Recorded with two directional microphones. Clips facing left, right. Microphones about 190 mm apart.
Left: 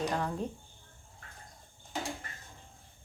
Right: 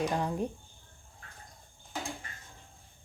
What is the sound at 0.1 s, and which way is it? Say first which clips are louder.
Speech: right 2 dB; 15° right (ahead or behind).